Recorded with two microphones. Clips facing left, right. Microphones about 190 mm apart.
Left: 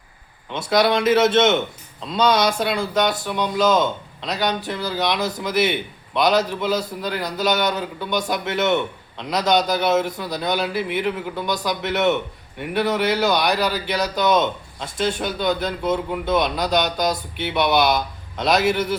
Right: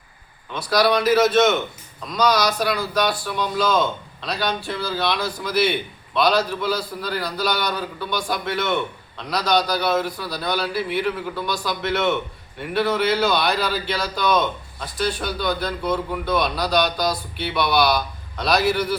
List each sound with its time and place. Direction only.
0.5 s a man's voice: 25° left (ahead or behind)